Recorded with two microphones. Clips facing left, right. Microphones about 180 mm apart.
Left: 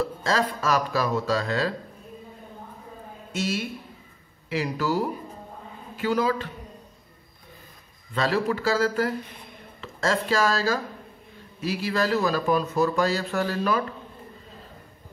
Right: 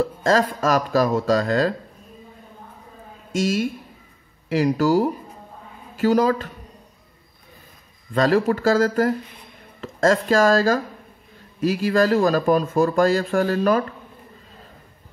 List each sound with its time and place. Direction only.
0.0 s speech: 45° right (ahead or behind)
3.3 s speech: 45° right (ahead or behind)
8.1 s speech: 45° right (ahead or behind)